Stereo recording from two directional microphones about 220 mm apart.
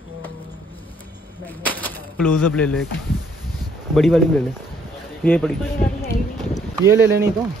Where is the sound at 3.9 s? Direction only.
Centre (ahead or behind).